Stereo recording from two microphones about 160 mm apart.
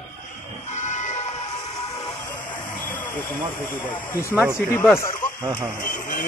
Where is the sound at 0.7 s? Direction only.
50° left (ahead or behind).